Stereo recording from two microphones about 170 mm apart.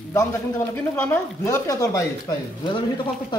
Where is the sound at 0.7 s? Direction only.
10° left (ahead or behind).